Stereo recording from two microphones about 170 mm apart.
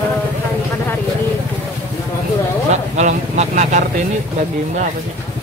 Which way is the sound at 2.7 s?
45° right (ahead or behind).